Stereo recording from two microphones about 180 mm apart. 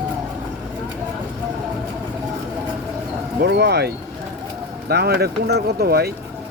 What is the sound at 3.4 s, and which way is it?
Speech, 65° right (ahead or behind).